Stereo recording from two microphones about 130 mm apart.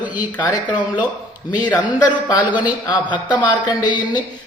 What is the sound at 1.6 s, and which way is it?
Speech, 30° left (ahead or behind).